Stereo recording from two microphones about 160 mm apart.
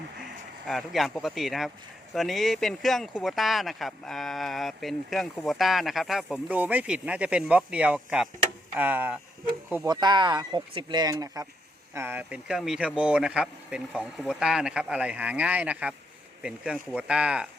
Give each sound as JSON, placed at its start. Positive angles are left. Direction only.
{"t": 0.7, "sound": "speech", "side_deg": 0}
{"t": 9.8, "sound": "speech", "side_deg": -25}